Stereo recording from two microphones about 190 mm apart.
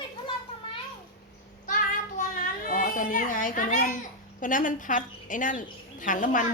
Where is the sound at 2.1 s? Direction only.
45° left (ahead or behind).